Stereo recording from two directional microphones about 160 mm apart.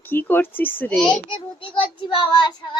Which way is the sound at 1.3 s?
30° left (ahead or behind).